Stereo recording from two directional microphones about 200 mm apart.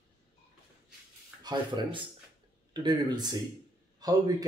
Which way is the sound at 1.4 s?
20° right (ahead or behind).